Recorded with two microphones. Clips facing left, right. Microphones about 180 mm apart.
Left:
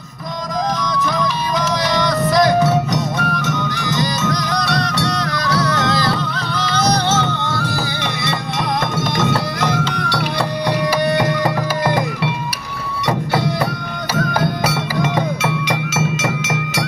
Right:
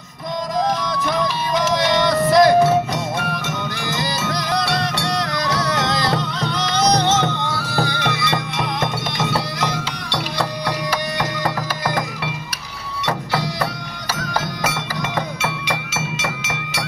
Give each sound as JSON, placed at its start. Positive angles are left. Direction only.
{"t": 0.9, "sound": "music", "side_deg": -25}
{"t": 4.3, "sound": "music", "side_deg": -25}
{"t": 14.1, "sound": "music", "side_deg": 55}
{"t": 15.9, "sound": "music", "side_deg": 40}